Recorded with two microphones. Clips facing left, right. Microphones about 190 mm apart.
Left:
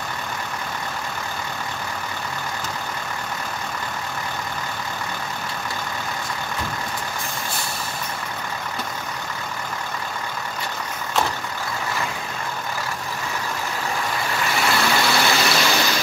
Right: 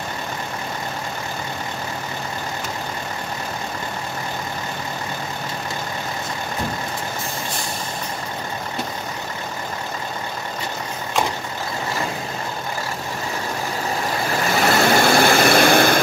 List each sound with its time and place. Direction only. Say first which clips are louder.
14.6 s vehicle: right 6 dB; 45° right (ahead or behind)